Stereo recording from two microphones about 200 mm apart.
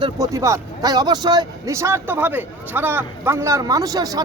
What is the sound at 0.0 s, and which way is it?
Speech, 15° right (ahead or behind).